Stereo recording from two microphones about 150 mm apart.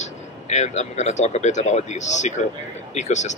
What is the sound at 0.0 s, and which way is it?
A man's voice, 50° left (ahead or behind).